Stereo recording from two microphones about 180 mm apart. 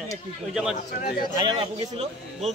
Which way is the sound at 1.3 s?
25° right (ahead or behind).